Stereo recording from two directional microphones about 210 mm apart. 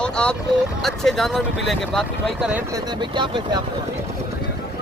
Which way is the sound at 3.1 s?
20° right (ahead or behind).